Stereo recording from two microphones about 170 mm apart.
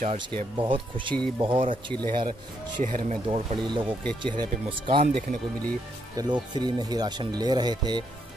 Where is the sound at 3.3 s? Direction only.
30° right (ahead or behind).